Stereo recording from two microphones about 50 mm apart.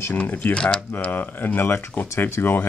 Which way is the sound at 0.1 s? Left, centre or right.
Left.